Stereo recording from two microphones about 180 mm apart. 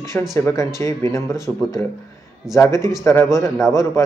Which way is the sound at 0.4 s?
20° left (ahead or behind).